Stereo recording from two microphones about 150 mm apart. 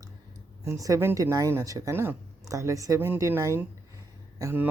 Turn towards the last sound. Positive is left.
turn(degrees=-15)  # may be behind; listen again after turning